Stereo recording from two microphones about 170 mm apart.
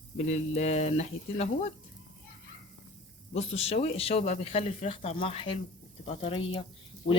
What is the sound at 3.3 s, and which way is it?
A man's voice, 40° left (ahead or behind).